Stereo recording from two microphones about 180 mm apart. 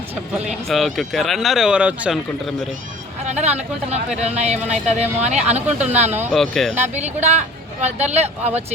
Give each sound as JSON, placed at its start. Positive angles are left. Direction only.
{"t": 0.7, "sound": "speech", "side_deg": 0}
{"t": 3.2, "sound": "speech", "side_deg": -40}
{"t": 6.3, "sound": "speech", "side_deg": 0}
{"t": 6.9, "sound": "speech", "side_deg": -40}